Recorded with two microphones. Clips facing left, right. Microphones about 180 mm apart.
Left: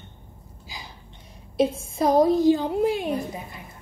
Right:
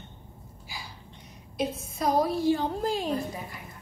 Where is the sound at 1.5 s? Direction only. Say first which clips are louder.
Left 8 dB; 30° left (ahead or behind).